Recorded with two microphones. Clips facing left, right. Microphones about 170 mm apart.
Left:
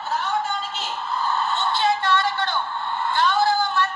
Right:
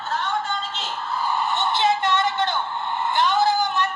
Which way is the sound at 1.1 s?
10° right (ahead or behind).